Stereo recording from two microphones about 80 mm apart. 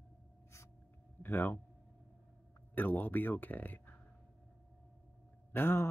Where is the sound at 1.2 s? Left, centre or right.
Left.